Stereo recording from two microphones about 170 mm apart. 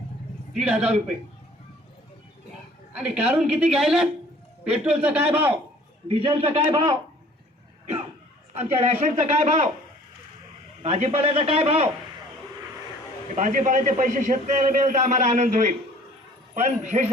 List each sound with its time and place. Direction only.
0.5 s a man's voice: 5° right (ahead or behind)
2.9 s a woman's voice: 5° right (ahead or behind)
6.1 s a man's voice: 35° right (ahead or behind)
8.5 s a man's voice: 40° right (ahead or behind)
10.8 s a man's voice: 40° right (ahead or behind)
13.3 s a man's voice: 45° right (ahead or behind)